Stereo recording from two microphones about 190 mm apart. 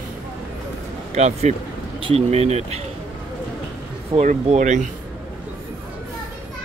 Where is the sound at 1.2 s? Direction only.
35° right (ahead or behind).